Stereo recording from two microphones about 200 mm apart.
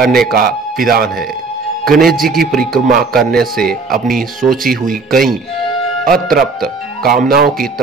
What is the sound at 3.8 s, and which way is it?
Speech, 45° right (ahead or behind).